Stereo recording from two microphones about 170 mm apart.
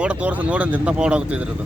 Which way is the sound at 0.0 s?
10° right (ahead or behind).